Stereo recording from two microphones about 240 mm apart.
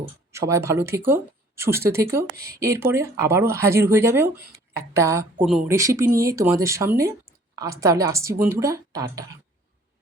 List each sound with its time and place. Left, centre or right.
0.3 s speech: centre
2.3 s speech: right
2.6 s a woman's voice: centre